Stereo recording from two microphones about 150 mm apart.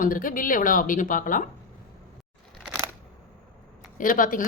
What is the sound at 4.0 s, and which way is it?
Speech, 65° left (ahead or behind).